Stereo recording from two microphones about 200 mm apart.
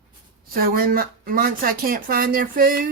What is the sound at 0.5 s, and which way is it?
Speech, 45° right (ahead or behind).